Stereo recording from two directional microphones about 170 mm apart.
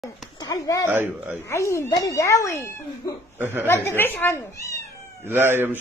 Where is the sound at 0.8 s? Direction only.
10° right (ahead or behind).